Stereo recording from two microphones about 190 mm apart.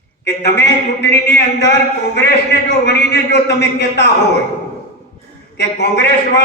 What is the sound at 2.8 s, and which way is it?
A man's voice, 60° left (ahead or behind).